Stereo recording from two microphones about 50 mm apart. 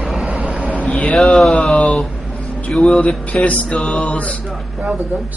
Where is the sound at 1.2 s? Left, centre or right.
Centre.